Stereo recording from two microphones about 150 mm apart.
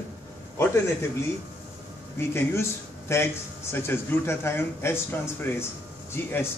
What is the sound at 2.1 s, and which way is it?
Speech, 15° left (ahead or behind).